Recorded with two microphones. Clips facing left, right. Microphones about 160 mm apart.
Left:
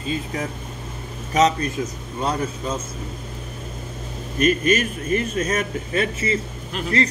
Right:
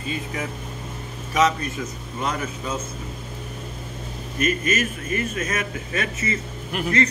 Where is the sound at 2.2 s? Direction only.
30° left (ahead or behind).